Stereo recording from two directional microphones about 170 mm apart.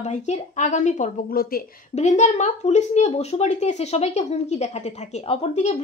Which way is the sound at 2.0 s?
45° left (ahead or behind).